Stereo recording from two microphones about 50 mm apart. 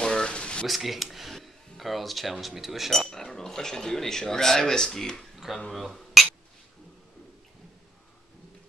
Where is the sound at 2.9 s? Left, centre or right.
Centre.